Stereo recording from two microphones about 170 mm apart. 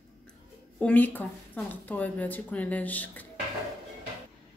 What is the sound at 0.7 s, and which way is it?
Speech, 10° left (ahead or behind).